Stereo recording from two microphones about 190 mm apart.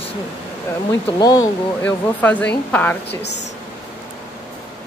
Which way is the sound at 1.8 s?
5° left (ahead or behind).